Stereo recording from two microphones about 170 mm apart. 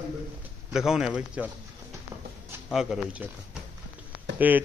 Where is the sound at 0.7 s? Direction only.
5° right (ahead or behind).